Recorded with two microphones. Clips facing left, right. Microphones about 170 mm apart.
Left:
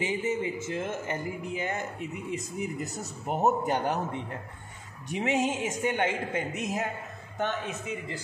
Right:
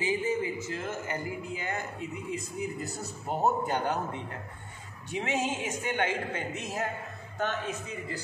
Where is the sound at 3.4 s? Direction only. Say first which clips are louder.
Left 2 dB; 20° left (ahead or behind).